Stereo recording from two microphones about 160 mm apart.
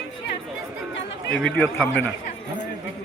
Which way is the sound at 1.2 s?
5° left (ahead or behind).